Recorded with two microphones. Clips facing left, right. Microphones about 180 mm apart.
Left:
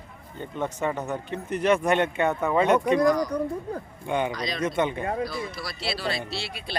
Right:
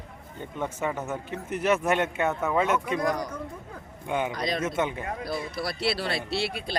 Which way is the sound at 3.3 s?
35° left (ahead or behind).